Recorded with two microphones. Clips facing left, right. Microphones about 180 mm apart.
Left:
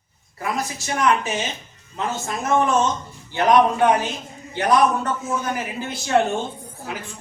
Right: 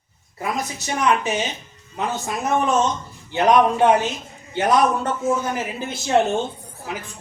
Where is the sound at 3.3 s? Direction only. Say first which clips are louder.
Even; 25° right (ahead or behind).